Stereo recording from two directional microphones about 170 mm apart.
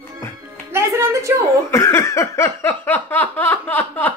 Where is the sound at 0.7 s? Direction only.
15° right (ahead or behind).